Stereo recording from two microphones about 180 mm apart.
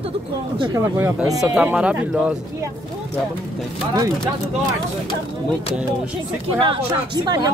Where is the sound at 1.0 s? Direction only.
10° right (ahead or behind).